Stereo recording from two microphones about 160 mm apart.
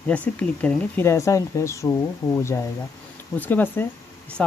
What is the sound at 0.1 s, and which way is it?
Speech, 10° left (ahead or behind).